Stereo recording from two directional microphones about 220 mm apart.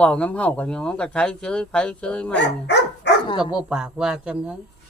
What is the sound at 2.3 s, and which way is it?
Dog, 50° left (ahead or behind).